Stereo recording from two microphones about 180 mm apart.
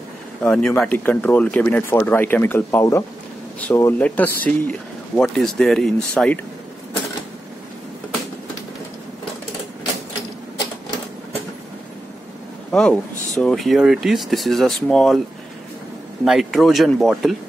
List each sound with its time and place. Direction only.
0.4 s speech: 5° left (ahead or behind)
12.7 s speech: 5° left (ahead or behind)
16.3 s speech: centre (ahead or behind)